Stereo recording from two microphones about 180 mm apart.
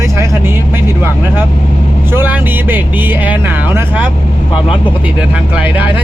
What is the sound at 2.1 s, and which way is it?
Speech, 10° right (ahead or behind).